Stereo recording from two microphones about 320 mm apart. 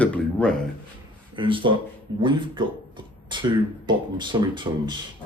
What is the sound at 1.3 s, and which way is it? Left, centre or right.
Speech, centre.